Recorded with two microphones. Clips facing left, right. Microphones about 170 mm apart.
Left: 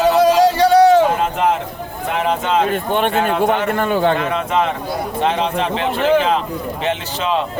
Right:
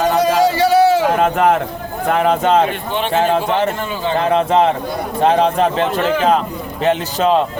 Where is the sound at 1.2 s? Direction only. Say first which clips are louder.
Right 4 dB; 60° right (ahead or behind).